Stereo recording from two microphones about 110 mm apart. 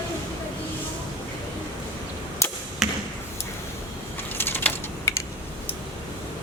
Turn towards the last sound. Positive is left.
turn(degrees=20)  # may be behind; listen again after turning